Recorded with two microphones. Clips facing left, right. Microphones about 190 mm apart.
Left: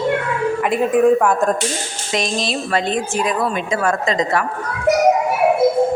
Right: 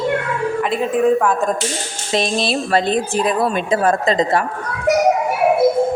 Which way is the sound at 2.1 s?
30° right (ahead or behind).